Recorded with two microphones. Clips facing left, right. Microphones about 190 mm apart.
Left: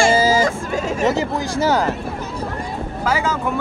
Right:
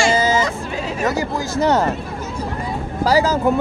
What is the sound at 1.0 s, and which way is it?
Speech, 25° left (ahead or behind).